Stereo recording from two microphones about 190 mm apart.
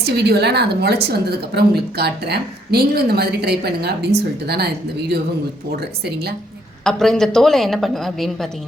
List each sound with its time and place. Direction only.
0.0 s a woman's voice: 60° right (ahead or behind)
6.8 s a woman's voice: 5° left (ahead or behind)